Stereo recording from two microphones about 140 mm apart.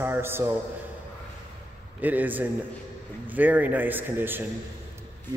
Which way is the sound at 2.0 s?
10° right (ahead or behind).